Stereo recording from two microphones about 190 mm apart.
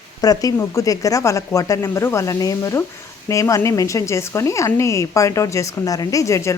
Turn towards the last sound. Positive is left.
turn(degrees=15)  # may be behind; listen again after turning